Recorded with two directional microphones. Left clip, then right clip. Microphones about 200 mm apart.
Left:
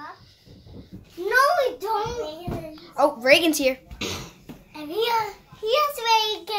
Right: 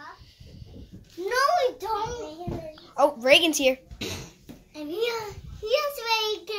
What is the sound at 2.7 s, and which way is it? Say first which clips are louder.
Speech: left 1 dB; 5° right (ahead or behind).